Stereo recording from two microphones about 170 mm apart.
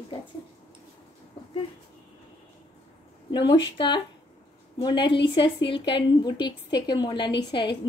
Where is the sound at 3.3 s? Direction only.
25° left (ahead or behind).